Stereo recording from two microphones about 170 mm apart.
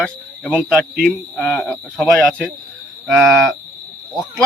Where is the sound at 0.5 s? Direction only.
5° right (ahead or behind).